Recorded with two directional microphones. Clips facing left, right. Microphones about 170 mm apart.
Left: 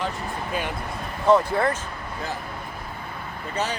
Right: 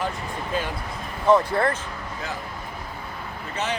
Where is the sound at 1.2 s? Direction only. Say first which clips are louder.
Even; 10° left (ahead or behind).